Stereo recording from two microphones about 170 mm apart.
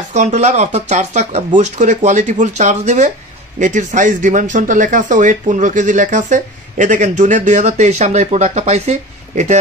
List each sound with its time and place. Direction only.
0.1 s speech: 45° right (ahead or behind)